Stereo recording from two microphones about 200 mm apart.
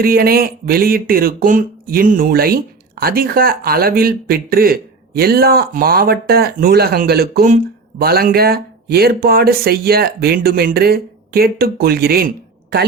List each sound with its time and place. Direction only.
0.0 s speech: 50° right (ahead or behind)